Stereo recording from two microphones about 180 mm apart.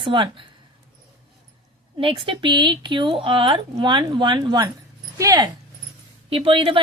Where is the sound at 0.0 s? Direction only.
25° right (ahead or behind).